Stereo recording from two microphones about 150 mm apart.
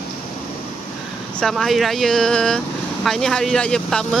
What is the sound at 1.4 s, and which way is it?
Speech, centre (ahead or behind).